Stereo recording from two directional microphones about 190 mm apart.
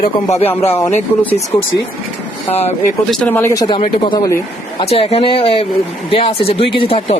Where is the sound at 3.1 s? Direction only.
5° left (ahead or behind).